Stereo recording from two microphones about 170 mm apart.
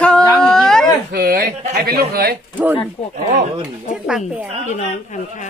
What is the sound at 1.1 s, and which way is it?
Speech, 60° right (ahead or behind).